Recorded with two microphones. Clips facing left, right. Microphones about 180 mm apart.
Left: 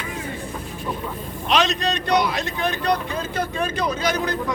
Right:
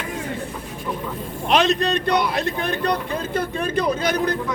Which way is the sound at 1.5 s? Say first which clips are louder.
Right 3 dB; 55° right (ahead or behind).